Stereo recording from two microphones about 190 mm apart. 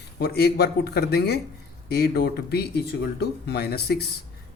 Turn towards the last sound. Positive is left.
turn(degrees=55)  # may be behind; listen again after turning